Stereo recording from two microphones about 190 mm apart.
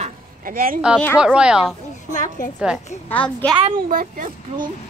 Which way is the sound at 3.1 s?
10° left (ahead or behind).